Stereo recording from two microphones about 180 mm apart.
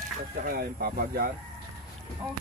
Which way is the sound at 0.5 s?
60° right (ahead or behind).